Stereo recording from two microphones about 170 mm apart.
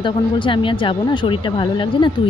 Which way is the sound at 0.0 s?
30° left (ahead or behind).